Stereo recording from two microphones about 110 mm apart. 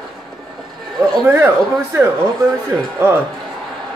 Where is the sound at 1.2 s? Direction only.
25° right (ahead or behind).